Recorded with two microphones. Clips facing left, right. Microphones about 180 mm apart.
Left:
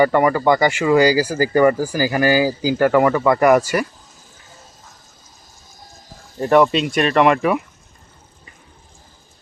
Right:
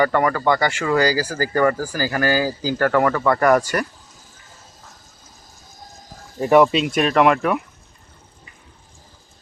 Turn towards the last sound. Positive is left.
turn(degrees=0)  # may be behind; listen again after turning